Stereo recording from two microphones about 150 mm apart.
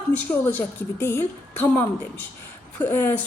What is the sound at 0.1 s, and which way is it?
Speech, 10° left (ahead or behind).